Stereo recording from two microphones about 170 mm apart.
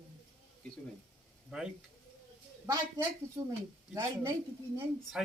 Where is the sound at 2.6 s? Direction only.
20° right (ahead or behind).